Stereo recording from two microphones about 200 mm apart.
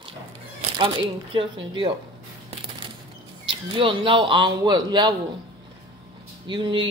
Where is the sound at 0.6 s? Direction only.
25° right (ahead or behind).